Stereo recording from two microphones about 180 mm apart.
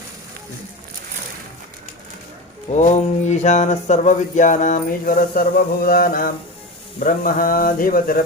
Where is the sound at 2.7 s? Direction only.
40° left (ahead or behind).